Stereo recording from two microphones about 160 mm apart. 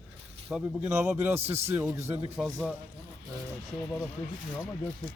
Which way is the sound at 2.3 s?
Centre (ahead or behind).